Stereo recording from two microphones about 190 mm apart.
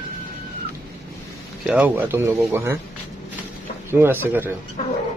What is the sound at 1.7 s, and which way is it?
Speech, 10° right (ahead or behind).